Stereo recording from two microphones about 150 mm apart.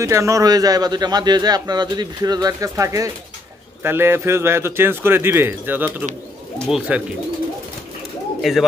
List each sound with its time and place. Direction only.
0.0 s a man's voice: 20° right (ahead or behind); by 6.8 s 5° right (ahead or behind)
8.4 s speech: centre (ahead or behind)